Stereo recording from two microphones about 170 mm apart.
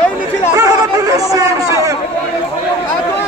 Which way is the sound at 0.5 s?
20° right (ahead or behind).